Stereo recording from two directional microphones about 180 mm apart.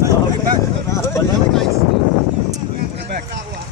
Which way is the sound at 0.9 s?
15° left (ahead or behind).